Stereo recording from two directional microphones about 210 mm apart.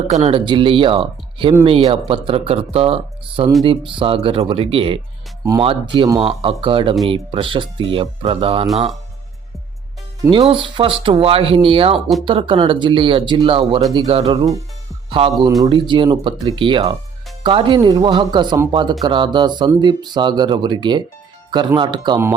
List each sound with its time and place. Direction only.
0.1 s speech: 30° right (ahead or behind)
10.2 s speech: 25° right (ahead or behind)
15.7 s speech: 20° right (ahead or behind)